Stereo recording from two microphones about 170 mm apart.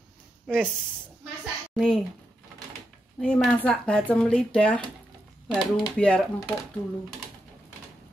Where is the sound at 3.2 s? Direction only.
5° left (ahead or behind).